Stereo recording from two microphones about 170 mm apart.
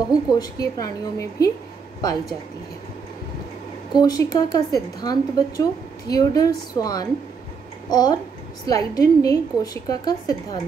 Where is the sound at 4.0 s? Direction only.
25° left (ahead or behind).